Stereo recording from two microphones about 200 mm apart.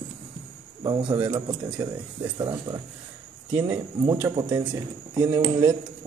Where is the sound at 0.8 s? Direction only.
20° right (ahead or behind).